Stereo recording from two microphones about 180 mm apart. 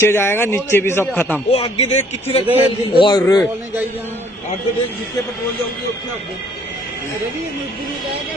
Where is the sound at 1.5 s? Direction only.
35° left (ahead or behind).